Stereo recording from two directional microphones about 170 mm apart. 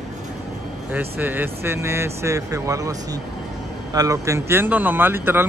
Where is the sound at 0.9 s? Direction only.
10° right (ahead or behind).